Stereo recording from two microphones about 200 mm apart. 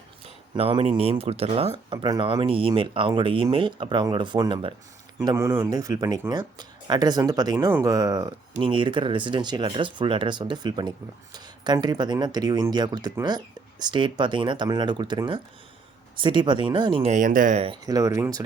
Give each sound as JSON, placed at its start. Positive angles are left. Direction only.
{"t": 0.5, "sound": "speech", "side_deg": -25}
{"t": 17.7, "sound": "speech", "side_deg": -20}